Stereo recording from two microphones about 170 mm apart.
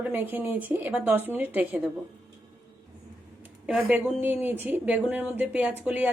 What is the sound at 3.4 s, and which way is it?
A woman's voice, 10° right (ahead or behind).